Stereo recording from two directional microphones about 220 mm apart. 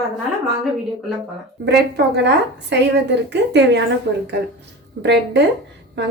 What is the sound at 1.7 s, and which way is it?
A woman's voice, 50° right (ahead or behind).